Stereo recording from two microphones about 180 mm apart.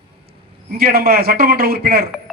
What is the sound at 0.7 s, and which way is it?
A man's voice, 60° right (ahead or behind).